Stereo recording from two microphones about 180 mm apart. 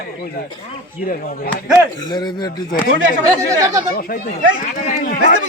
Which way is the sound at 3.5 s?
15° right (ahead or behind).